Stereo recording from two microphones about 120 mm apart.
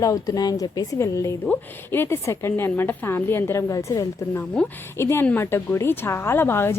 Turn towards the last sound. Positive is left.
turn(degrees=20)  # may be behind; listen again after turning